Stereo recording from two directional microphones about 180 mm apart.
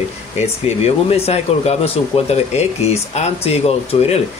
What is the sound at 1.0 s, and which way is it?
Speech, 35° left (ahead or behind).